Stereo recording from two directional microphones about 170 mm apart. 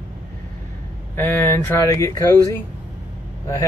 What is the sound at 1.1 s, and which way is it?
Speech, 10° left (ahead or behind).